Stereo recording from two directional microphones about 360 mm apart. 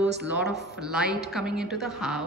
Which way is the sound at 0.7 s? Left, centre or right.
Centre.